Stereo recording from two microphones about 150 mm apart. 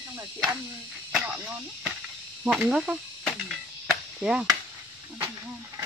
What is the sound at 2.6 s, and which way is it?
Cricket, 5° right (ahead or behind).